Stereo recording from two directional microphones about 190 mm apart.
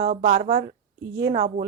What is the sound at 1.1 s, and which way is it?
Speech, 20° right (ahead or behind).